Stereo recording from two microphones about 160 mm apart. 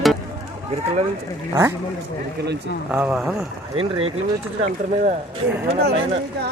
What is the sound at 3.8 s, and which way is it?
Speech, 35° right (ahead or behind).